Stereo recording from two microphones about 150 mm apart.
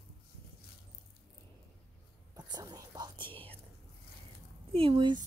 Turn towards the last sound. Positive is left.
turn(degrees=-30)  # may be behind; listen again after turning